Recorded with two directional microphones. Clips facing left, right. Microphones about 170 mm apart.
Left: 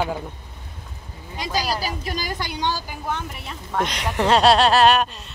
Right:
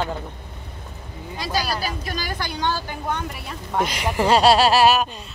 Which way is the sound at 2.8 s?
5° left (ahead or behind).